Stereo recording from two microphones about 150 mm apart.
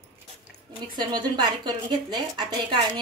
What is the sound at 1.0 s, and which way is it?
A woman's voice, 30° right (ahead or behind).